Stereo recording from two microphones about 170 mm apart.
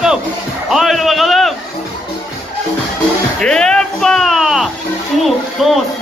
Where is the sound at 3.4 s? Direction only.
5° left (ahead or behind).